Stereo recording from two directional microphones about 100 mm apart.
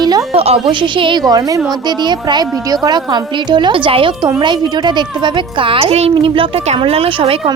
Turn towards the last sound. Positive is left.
turn(degrees=-65)  # may be behind; listen again after turning